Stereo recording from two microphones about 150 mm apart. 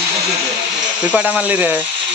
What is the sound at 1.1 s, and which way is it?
Speech, 10° right (ahead or behind).